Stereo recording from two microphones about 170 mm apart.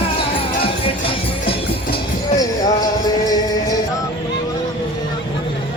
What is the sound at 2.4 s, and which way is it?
Music, 20° left (ahead or behind).